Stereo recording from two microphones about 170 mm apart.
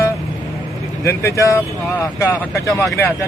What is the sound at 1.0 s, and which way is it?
Speech, 15° left (ahead or behind).